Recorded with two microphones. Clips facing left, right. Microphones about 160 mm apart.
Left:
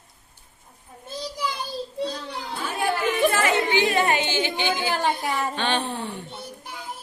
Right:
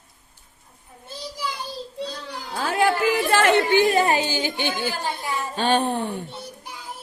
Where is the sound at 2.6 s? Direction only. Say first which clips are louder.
Right 5 dB; 90° right; by 6.2 s 50° right (ahead or behind).